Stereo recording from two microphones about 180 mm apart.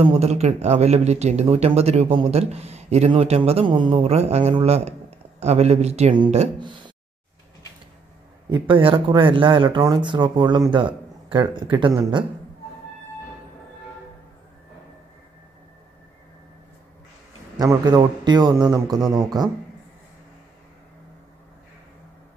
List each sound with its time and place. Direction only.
0.0 s speech: 35° right (ahead or behind)
8.5 s speech: 25° right (ahead or behind)
17.6 s speech: 20° right (ahead or behind)